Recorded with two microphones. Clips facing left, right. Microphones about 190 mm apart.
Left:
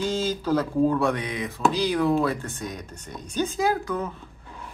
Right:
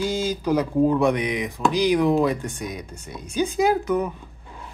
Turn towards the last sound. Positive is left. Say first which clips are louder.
# right 4 dB
turn(degrees=-20)  # may be behind; listen again after turning